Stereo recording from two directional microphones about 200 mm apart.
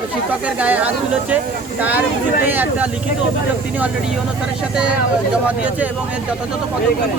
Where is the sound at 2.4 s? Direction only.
10° right (ahead or behind).